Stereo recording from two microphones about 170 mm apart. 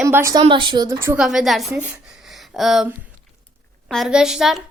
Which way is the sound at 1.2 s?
Centre (ahead or behind).